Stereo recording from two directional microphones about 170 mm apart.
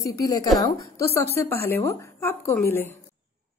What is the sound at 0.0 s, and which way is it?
A woman's voice, 20° left (ahead or behind).